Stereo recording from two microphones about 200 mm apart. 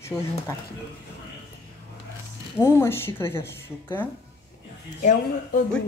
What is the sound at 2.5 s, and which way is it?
Speech, 10° left (ahead or behind).